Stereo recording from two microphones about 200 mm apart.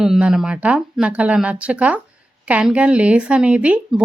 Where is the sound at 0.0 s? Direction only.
5° right (ahead or behind).